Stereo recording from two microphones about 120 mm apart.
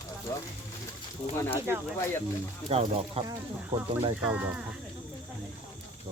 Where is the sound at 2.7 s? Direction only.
55° right (ahead or behind).